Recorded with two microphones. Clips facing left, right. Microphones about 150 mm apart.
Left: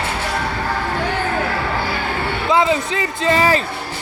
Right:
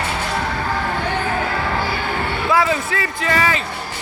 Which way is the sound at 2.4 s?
20° left (ahead or behind).